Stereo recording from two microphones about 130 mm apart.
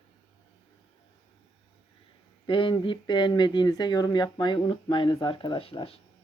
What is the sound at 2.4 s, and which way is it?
A woman's voice, 40° left (ahead or behind).